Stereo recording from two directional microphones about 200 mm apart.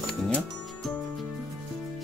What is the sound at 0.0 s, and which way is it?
Music, centre (ahead or behind).